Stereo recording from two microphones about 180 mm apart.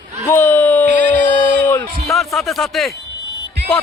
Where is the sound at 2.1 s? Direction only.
Centre (ahead or behind).